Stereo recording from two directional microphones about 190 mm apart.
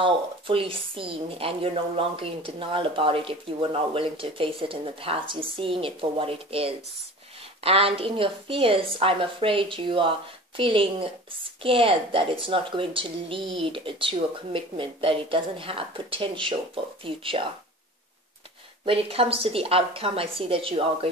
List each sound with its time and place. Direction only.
0.0 s a woman's voice: 30° right (ahead or behind)
18.9 s a woman's voice: 30° right (ahead or behind)